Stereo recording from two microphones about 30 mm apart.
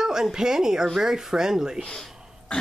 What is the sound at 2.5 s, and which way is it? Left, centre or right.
Burping, left.